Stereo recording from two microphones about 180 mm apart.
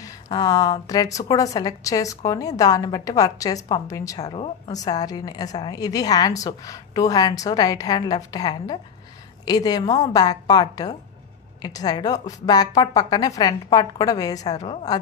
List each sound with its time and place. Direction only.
0.0 s speech: 20° left (ahead or behind)